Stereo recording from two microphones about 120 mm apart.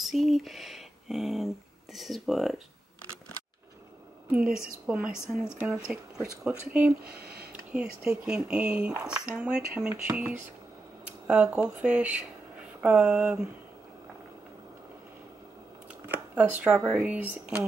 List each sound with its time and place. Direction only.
0.0 s speech: centre (ahead or behind)
4.3 s speech: 10° right (ahead or behind)
8.3 s speech: 5° right (ahead or behind)
16.1 s speech: 15° right (ahead or behind)